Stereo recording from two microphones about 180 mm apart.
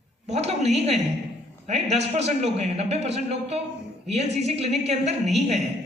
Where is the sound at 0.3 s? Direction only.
35° right (ahead or behind).